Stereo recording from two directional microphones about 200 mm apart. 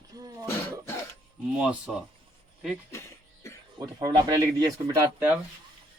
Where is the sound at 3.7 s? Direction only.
20° right (ahead or behind).